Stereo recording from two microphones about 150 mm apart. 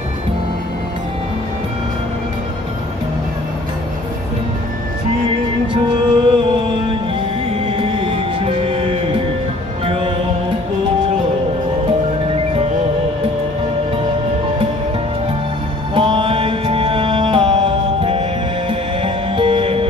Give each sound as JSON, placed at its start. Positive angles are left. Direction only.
{"t": 5.7, "sound": "music", "side_deg": -35}
{"t": 7.7, "sound": "music", "side_deg": -35}
{"t": 15.9, "sound": "music", "side_deg": -35}